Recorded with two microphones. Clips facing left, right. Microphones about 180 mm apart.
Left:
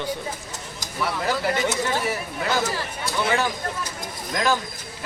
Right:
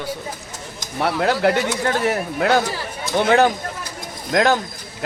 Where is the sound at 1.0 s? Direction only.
65° right (ahead or behind).